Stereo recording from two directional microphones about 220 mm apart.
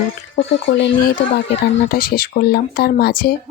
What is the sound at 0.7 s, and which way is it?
Speech, 55° left (ahead or behind).